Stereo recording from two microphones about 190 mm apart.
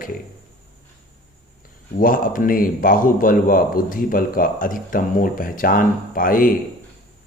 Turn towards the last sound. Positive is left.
turn(degrees=45)  # may be behind; listen again after turning